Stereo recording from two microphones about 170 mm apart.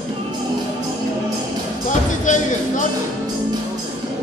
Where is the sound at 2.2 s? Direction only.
50° left (ahead or behind).